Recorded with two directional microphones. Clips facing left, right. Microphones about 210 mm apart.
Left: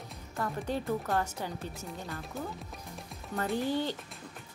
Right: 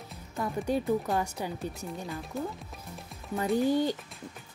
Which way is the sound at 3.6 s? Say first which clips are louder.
Right 7 dB; 15° right (ahead or behind).